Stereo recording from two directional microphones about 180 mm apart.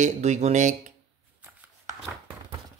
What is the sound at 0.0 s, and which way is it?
Speech, 40° right (ahead or behind).